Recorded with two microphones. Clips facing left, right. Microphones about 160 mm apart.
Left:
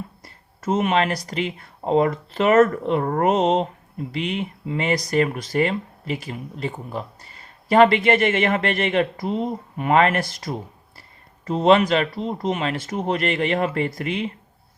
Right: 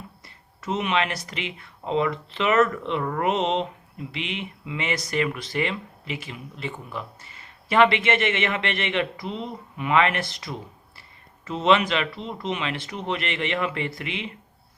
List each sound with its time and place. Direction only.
0.6 s speech: 45° left (ahead or behind)